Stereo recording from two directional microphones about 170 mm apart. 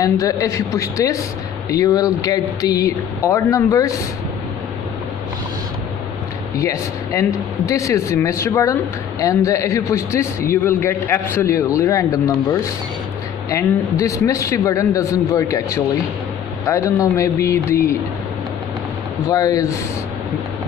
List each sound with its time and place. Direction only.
0.0 s a man's voice: 20° left (ahead or behind)
6.6 s a man's voice: 15° left (ahead or behind)
19.2 s a man's voice: 20° left (ahead or behind)